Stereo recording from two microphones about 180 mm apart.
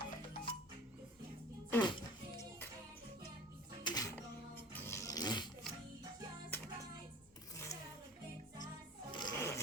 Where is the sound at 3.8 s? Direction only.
25° left (ahead or behind).